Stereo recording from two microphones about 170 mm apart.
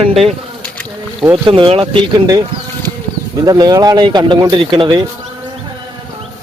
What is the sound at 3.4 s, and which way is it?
Speech, 20° right (ahead or behind).